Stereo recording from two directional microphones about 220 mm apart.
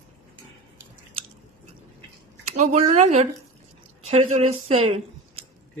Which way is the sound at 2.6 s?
30° right (ahead or behind).